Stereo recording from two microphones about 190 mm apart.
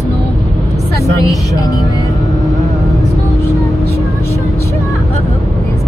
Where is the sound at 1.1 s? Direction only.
15° left (ahead or behind).